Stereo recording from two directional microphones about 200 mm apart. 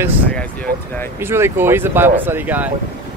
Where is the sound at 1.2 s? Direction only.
10° right (ahead or behind).